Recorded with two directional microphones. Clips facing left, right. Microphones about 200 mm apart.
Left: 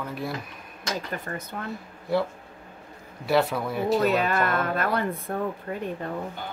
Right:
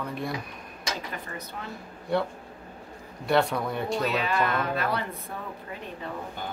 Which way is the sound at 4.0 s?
50° left (ahead or behind).